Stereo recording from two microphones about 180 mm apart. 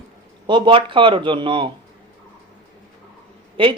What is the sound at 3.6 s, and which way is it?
Speech, 30° right (ahead or behind).